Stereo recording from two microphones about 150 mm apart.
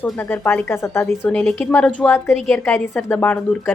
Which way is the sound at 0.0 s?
15° left (ahead or behind).